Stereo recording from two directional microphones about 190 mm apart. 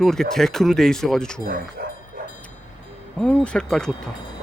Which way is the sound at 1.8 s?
55° right (ahead or behind).